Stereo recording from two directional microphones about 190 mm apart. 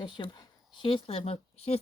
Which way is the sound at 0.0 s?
25° left (ahead or behind).